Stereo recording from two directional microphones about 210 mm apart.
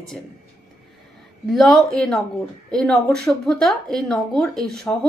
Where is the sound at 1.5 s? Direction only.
Centre (ahead or behind).